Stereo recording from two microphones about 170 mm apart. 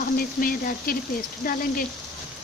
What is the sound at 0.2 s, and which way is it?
Speech, 55° left (ahead or behind).